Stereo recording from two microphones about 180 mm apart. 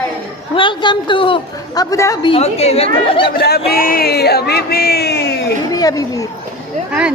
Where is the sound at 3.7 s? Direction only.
55° left (ahead or behind).